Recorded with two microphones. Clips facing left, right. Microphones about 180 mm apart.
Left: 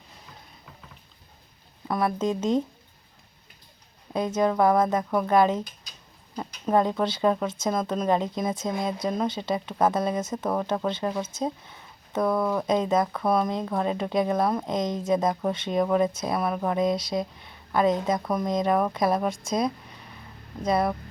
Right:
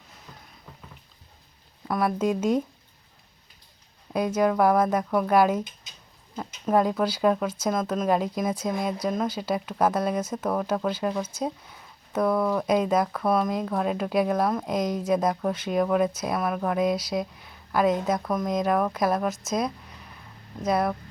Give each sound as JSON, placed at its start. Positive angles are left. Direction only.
{"t": 1.9, "sound": "speech", "side_deg": 0}
{"t": 4.4, "sound": "speech", "side_deg": -5}
{"t": 6.7, "sound": "speech", "side_deg": -5}
{"t": 15.3, "sound": "speech", "side_deg": 0}
{"t": 18.2, "sound": "speech", "side_deg": 5}
{"t": 19.3, "sound": "speech", "side_deg": 30}
{"t": 20.7, "sound": "speech", "side_deg": 0}